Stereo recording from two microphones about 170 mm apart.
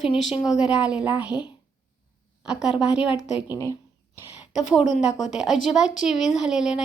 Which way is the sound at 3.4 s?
20° left (ahead or behind).